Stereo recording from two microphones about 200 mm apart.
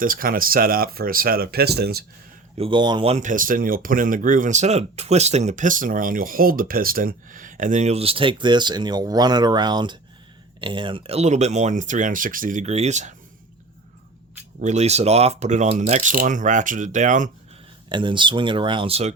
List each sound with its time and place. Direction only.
0.0 s speech: 45° right (ahead or behind)
2.6 s speech: 25° right (ahead or behind)
14.6 s speech: 35° right (ahead or behind)
17.8 s speech: 25° right (ahead or behind)